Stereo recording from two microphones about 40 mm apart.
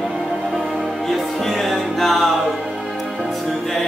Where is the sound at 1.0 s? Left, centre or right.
Centre.